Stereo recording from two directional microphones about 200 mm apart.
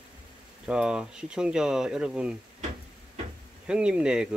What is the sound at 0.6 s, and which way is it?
Speech, 5° right (ahead or behind).